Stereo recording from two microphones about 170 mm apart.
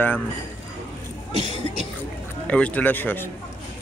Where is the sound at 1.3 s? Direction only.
40° right (ahead or behind).